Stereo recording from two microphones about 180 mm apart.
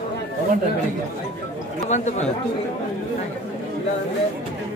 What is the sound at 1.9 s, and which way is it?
Speech, 40° left (ahead or behind).